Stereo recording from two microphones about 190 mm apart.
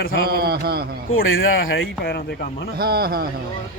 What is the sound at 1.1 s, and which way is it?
Speech, 90° left.